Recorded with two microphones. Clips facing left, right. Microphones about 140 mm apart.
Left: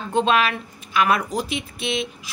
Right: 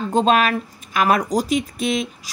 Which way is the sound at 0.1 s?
40° right (ahead or behind).